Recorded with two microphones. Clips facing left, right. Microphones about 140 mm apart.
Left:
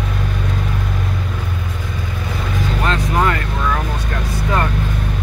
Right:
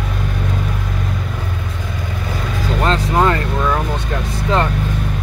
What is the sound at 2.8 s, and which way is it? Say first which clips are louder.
Vehicle: right 3 dB; 30° right (ahead or behind).